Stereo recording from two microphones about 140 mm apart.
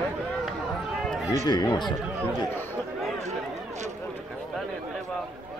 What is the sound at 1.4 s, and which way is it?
Speech, 30° left (ahead or behind).